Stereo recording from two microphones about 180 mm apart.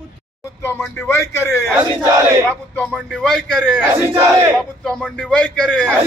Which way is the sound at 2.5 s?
5° left (ahead or behind).